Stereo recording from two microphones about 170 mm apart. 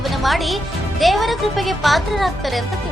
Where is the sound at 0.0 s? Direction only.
Centre (ahead or behind).